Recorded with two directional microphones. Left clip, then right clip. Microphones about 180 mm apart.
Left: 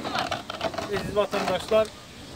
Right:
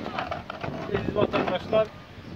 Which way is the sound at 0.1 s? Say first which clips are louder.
Left 5 dB; 25° right (ahead or behind).